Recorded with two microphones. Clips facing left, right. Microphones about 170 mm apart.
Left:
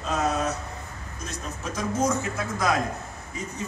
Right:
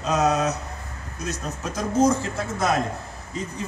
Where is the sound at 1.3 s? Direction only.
35° right (ahead or behind).